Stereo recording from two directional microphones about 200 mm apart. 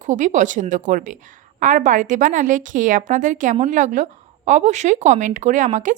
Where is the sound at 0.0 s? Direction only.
35° right (ahead or behind).